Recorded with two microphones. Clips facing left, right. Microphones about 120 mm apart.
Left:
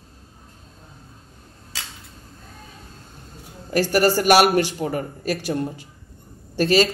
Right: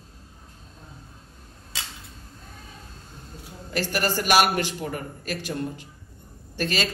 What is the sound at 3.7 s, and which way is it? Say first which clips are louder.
A woman's voice: left 8 dB; 45° left (ahead or behind).